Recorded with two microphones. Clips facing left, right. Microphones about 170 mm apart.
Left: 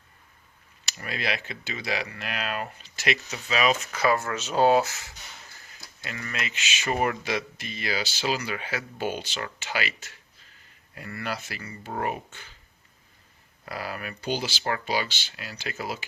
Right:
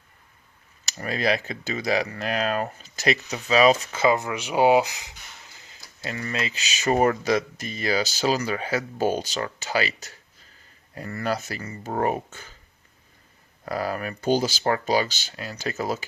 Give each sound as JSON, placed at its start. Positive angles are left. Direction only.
{"t": 0.9, "sound": "speech", "side_deg": -40}
{"t": 4.0, "sound": "speech", "side_deg": -20}
{"t": 5.5, "sound": "a sound", "side_deg": -20}
{"t": 6.0, "sound": "speech", "side_deg": -35}
{"t": 13.7, "sound": "speech", "side_deg": -40}